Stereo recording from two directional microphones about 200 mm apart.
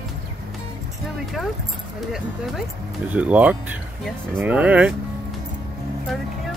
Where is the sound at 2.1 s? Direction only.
Centre (ahead or behind).